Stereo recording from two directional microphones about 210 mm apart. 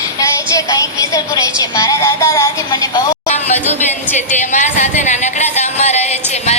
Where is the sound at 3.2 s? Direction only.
30° left (ahead or behind).